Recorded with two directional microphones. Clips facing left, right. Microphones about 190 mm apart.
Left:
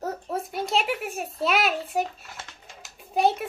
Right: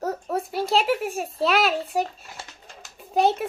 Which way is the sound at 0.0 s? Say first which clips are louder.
Right 3 dB; centre (ahead or behind).